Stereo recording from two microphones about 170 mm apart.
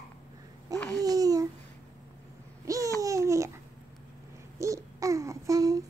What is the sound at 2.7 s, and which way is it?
Babbling, 20° right (ahead or behind).